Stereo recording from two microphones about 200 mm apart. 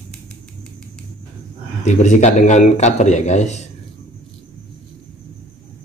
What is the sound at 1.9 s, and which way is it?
A man's voice, 35° left (ahead or behind).